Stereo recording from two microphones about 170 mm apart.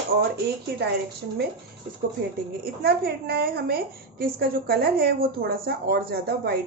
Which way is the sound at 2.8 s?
65° right (ahead or behind).